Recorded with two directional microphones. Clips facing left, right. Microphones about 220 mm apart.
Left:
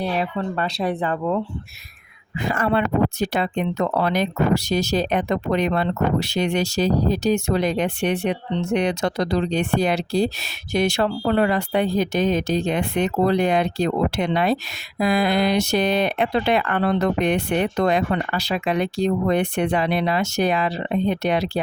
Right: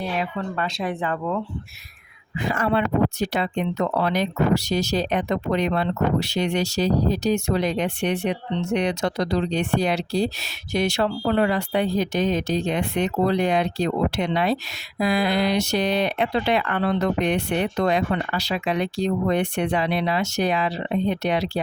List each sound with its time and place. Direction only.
0.2 s speech: 35° left (ahead or behind)
2.4 s speech: 50° left (ahead or behind)